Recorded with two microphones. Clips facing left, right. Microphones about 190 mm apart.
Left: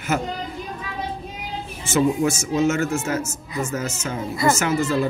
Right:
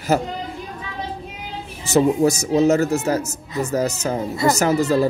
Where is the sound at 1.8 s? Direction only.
35° right (ahead or behind).